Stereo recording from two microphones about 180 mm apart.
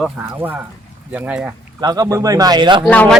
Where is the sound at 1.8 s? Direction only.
20° right (ahead or behind).